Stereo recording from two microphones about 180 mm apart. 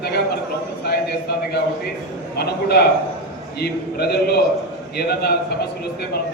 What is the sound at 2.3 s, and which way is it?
Speech, 65° left (ahead or behind).